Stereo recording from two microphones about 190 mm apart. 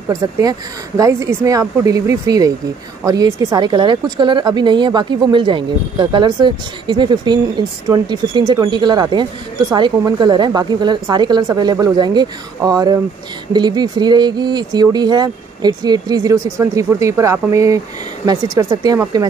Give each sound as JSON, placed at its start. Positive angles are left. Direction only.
{"t": 0.1, "sound": "a woman's voice", "side_deg": -20}